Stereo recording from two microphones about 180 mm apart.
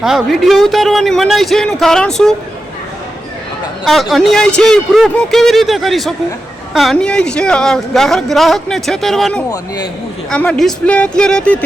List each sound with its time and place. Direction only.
0.0 s speech: centre (ahead or behind)
3.8 s speech: centre (ahead or behind)